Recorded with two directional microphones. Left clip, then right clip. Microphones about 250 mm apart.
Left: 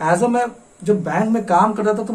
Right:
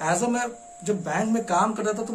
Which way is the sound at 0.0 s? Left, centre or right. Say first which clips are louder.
Left 8 dB; centre.